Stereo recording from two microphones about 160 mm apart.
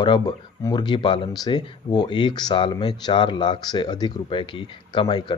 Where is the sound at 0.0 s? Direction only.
25° left (ahead or behind).